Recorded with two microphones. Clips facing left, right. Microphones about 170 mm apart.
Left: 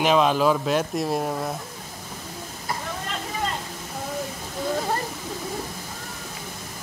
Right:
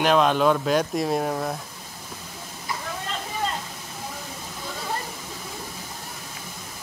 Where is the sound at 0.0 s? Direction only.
Centre (ahead or behind).